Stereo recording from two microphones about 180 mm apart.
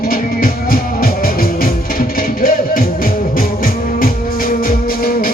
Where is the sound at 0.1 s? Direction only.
50° left (ahead or behind).